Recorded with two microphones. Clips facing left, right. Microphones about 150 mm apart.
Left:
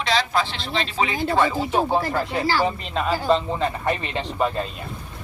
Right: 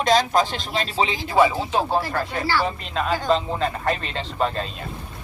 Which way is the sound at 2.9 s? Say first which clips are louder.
Even; centre (ahead or behind).